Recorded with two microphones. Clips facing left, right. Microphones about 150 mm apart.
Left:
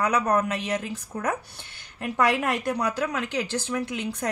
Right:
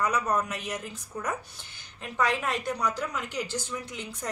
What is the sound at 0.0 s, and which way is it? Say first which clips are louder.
A woman's voice: left 4 dB; 65° left (ahead or behind).